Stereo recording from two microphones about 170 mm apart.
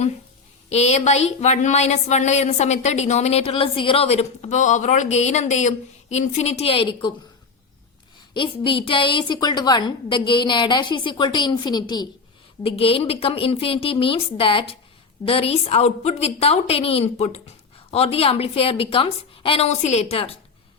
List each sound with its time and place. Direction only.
0.7 s speech: 40° left (ahead or behind)
8.3 s a woman's voice: 30° left (ahead or behind)